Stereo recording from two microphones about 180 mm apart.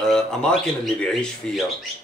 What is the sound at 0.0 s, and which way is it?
Speech, 5° left (ahead or behind).